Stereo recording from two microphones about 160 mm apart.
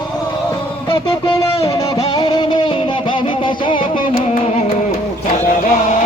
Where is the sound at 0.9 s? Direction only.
35° left (ahead or behind).